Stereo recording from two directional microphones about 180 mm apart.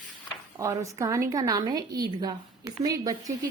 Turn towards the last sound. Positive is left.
turn(degrees=-20)  # may be behind; listen again after turning